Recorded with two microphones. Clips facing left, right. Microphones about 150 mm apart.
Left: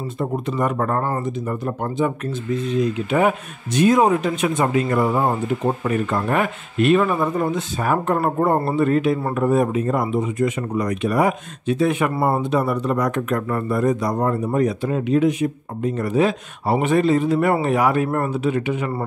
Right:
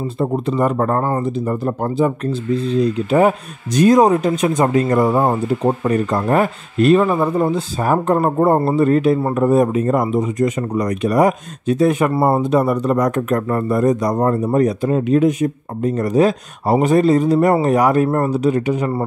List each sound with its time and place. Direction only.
0.2 s speech: 30° right (ahead or behind)